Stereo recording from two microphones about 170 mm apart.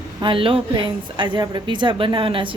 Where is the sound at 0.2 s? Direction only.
30° right (ahead or behind).